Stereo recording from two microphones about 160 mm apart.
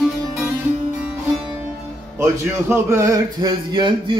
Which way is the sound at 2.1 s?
15° right (ahead or behind).